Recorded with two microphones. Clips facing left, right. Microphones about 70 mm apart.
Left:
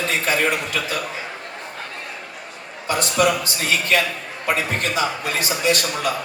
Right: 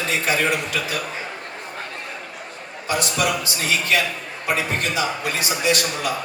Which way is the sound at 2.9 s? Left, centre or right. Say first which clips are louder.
Left 3 dB; left.